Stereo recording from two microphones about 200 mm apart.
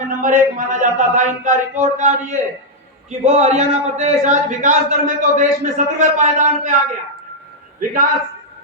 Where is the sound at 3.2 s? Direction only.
35° right (ahead or behind).